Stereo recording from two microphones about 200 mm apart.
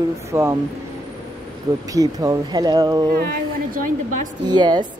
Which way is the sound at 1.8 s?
20° right (ahead or behind).